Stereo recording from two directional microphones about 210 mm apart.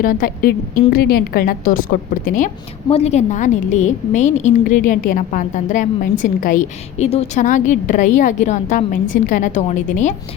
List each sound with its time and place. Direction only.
0.0 s a woman's voice: 40° left (ahead or behind)